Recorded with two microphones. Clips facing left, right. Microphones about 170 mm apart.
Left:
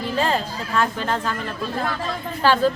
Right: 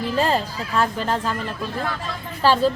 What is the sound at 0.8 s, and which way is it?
Speech, 35° right (ahead or behind).